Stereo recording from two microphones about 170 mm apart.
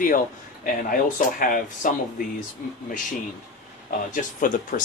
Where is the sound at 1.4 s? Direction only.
55° left (ahead or behind).